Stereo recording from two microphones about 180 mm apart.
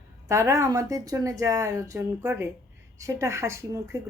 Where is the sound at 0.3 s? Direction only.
15° right (ahead or behind).